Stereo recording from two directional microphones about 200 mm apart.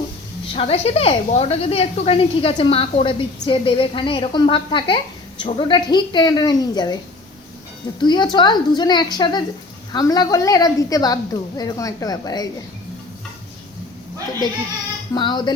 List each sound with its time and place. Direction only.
0.4 s a woman's voice: 30° left (ahead or behind)
8.0 s a woman's voice: 20° left (ahead or behind)
15.1 s a woman's voice: 20° left (ahead or behind)